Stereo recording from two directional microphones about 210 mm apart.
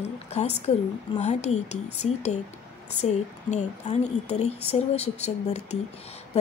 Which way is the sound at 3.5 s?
35° left (ahead or behind).